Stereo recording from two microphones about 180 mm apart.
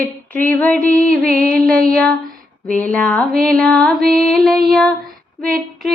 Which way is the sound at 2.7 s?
5° left (ahead or behind).